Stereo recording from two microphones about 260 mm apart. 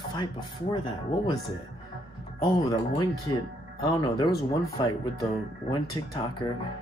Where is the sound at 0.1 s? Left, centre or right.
Centre.